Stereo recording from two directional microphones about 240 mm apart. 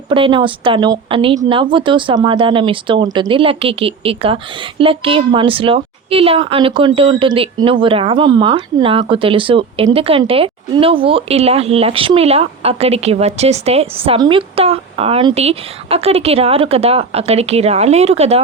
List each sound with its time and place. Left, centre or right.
0.1 s a woman's voice: right